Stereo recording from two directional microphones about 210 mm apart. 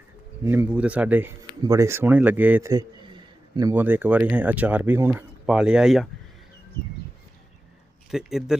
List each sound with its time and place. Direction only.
0.4 s speech: 10° right (ahead or behind)
8.1 s speech: centre (ahead or behind)